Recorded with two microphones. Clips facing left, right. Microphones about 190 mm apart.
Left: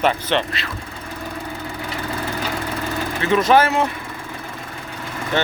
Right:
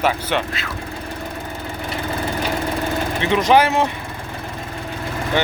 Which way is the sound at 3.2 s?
20° right (ahead or behind).